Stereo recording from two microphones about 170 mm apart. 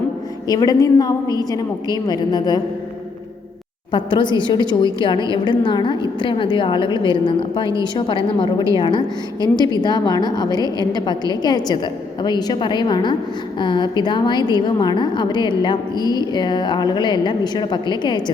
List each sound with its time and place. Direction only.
0.4 s a woman's voice: 20° left (ahead or behind)
3.9 s a woman's voice: 30° left (ahead or behind)